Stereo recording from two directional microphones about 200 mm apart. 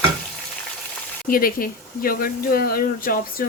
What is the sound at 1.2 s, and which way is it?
Speech, 45° left (ahead or behind).